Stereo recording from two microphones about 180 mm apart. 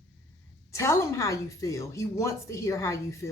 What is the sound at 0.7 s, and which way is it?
A woman's voice, 15° left (ahead or behind).